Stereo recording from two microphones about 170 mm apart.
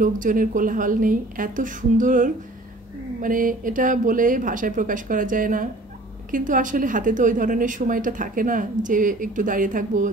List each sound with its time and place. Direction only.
0.0 s a woman's voice: 50° right (ahead or behind)